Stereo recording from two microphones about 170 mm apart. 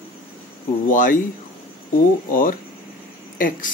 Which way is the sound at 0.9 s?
50° left (ahead or behind).